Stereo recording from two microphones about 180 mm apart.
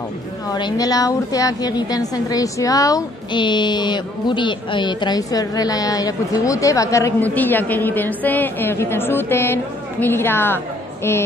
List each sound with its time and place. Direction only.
0.5 s a woman's voice: 20° left (ahead or behind)